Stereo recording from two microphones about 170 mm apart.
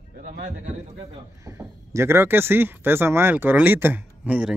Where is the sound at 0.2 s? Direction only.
50° right (ahead or behind).